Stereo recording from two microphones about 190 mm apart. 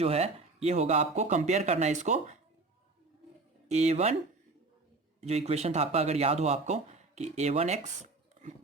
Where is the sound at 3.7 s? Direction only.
35° right (ahead or behind).